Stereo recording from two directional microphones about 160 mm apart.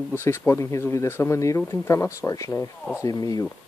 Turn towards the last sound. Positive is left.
turn(degrees=20)  # may be behind; listen again after turning